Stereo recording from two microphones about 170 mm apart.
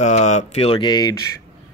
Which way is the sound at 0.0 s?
45° left (ahead or behind).